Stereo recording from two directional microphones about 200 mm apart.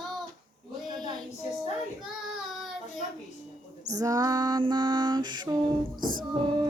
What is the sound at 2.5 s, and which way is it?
Child singing, centre (ahead or behind).